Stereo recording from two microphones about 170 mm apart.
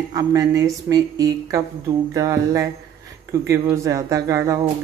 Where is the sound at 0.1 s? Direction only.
20° right (ahead or behind).